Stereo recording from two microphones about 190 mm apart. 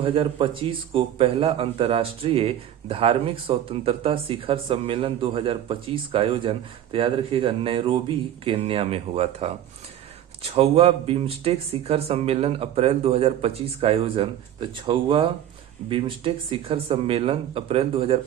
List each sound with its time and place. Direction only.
0.0 s speech: 30° right (ahead or behind)